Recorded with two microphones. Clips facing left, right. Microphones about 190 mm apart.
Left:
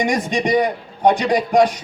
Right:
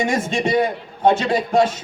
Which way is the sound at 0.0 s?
15° left (ahead or behind).